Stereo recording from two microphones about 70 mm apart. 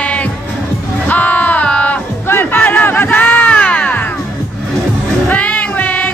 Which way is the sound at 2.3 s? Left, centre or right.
Left.